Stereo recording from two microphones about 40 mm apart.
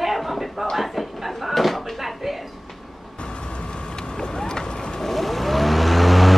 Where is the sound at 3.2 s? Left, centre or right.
Left.